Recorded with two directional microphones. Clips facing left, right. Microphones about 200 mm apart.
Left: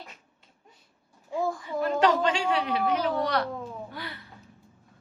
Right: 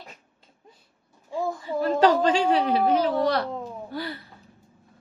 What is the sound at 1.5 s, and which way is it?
A woman's voice, 30° right (ahead or behind).